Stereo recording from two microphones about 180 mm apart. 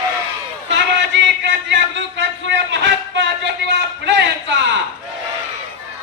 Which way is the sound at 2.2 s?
75° right (ahead or behind).